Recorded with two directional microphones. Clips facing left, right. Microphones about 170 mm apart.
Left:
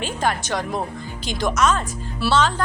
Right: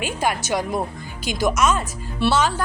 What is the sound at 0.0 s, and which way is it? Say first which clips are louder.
Speech: even; 10° right (ahead or behind).